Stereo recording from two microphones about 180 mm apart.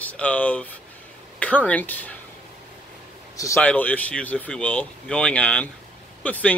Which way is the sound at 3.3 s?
15° left (ahead or behind).